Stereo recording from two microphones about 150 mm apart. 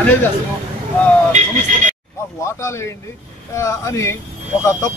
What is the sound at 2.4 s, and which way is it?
Speech, 20° left (ahead or behind).